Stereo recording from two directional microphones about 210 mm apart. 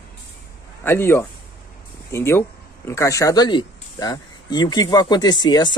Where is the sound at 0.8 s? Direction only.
10° left (ahead or behind).